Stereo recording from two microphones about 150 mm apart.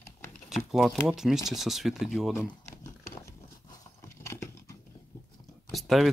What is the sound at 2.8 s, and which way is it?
Horse, 20° left (ahead or behind).